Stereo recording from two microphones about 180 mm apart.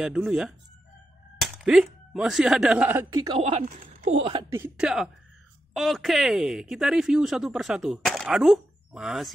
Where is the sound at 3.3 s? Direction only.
30° right (ahead or behind).